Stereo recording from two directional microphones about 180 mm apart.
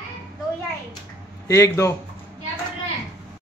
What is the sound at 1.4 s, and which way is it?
Speech, 15° left (ahead or behind).